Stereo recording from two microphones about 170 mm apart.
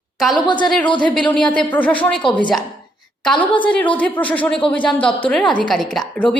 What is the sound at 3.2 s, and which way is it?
A woman's voice, 10° left (ahead or behind).